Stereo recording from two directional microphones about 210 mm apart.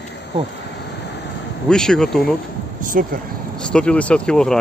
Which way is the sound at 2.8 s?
40° right (ahead or behind).